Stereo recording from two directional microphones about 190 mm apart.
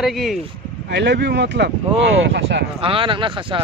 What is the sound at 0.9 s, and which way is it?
Speech, 65° right (ahead or behind).